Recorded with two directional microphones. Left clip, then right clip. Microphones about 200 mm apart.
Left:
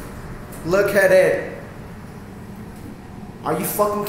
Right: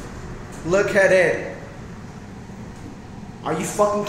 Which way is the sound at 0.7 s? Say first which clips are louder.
Left 2 dB; 5° left (ahead or behind).